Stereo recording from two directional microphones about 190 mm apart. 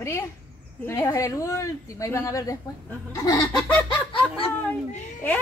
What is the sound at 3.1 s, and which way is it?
Fowl, 20° left (ahead or behind).